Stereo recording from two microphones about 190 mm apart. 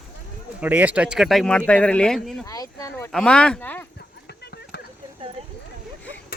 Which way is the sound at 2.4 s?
20° left (ahead or behind).